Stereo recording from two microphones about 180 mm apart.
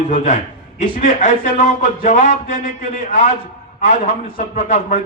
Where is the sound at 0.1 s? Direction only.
45° left (ahead or behind).